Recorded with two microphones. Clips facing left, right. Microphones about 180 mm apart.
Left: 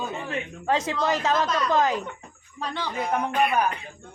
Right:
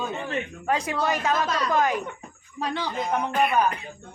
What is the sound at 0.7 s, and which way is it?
Speech, 20° left (ahead or behind).